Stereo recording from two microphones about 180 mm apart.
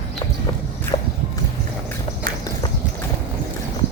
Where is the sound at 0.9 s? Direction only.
35° left (ahead or behind).